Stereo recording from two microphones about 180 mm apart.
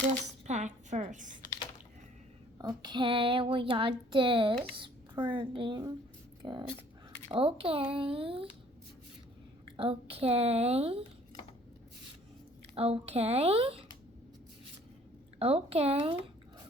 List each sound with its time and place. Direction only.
0.4 s a woman's voice: 40° right (ahead or behind)
1.5 s typing: 25° left (ahead or behind)
2.6 s a woman's voice: 25° right (ahead or behind)
9.7 s a woman's voice: 30° right (ahead or behind)
12.7 s a woman's voice: 35° right (ahead or behind)
15.4 s a woman's voice: 35° right (ahead or behind)